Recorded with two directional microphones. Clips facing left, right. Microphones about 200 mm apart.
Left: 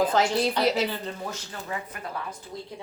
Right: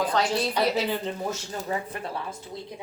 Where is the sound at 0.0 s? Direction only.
25° left (ahead or behind).